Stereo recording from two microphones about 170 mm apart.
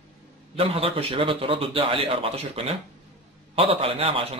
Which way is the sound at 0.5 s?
35° right (ahead or behind).